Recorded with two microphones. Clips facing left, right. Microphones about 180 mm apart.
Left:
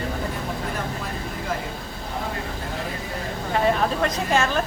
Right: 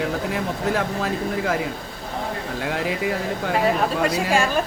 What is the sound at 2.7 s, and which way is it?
Speech, 90° right.